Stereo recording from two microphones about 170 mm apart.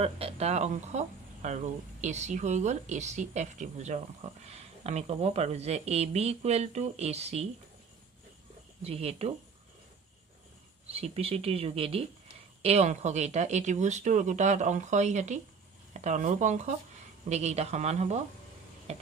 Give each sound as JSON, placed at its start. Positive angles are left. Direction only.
{"t": 0.0, "sound": "speech", "side_deg": -35}
{"t": 8.8, "sound": "speech", "side_deg": -35}
{"t": 10.9, "sound": "speech", "side_deg": -35}